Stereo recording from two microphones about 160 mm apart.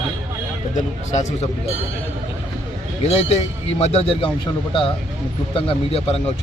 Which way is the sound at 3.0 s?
40° left (ahead or behind).